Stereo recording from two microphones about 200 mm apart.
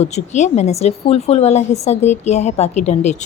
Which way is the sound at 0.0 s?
35° left (ahead or behind).